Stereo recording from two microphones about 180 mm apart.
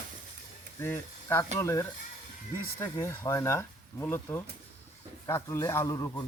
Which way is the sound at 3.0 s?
15° left (ahead or behind).